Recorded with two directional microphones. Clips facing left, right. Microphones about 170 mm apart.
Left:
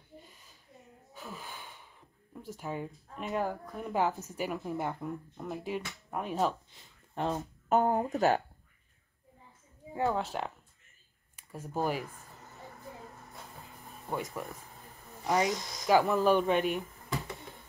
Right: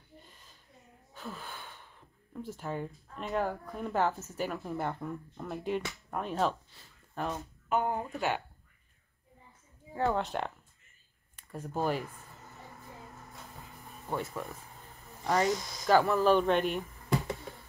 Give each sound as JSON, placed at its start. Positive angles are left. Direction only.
{"t": 0.2, "sound": "a sound", "side_deg": 10}
{"t": 1.1, "sound": "wheeze", "side_deg": 10}
{"t": 2.4, "sound": "speech", "side_deg": 10}
{"t": 6.7, "sound": "a sound", "side_deg": 20}
{"t": 7.2, "sound": "speech", "side_deg": 35}
{"t": 9.9, "sound": "speech", "side_deg": 5}
{"t": 14.0, "sound": "speech", "side_deg": 10}